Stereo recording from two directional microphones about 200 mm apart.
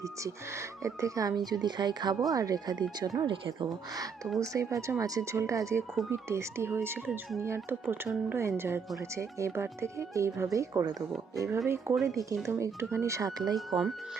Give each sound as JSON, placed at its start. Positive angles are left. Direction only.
{"t": 0.0, "sound": "speech", "side_deg": -15}
{"t": 13.6, "sound": "speech", "side_deg": 0}